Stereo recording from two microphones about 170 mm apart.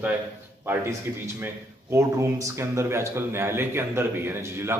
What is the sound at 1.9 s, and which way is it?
A man's voice, 15° right (ahead or behind).